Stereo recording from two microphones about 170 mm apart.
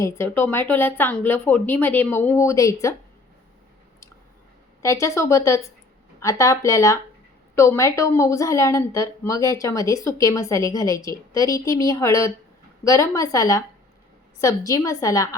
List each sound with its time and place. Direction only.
0.0 s speech: 15° left (ahead or behind)
4.8 s a woman's voice: 20° left (ahead or behind)